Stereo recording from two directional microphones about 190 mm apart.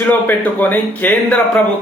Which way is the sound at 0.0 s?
10° left (ahead or behind).